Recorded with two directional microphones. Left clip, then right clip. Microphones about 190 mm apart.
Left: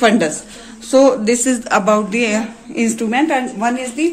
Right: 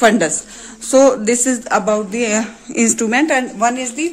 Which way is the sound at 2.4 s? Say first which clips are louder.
Right 2 dB; 50° right (ahead or behind).